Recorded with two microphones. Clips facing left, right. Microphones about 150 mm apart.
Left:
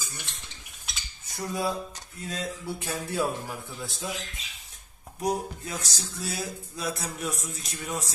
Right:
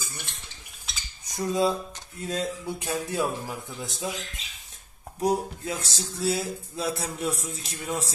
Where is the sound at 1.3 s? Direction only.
20° right (ahead or behind).